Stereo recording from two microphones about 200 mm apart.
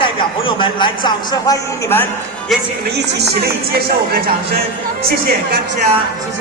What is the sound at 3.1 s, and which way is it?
Speech, 55° right (ahead or behind).